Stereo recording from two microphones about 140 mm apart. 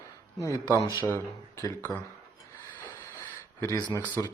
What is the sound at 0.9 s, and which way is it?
Speech, 15° left (ahead or behind).